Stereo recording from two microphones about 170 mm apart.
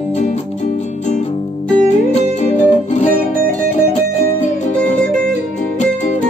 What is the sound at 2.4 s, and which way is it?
Music, 45° left (ahead or behind).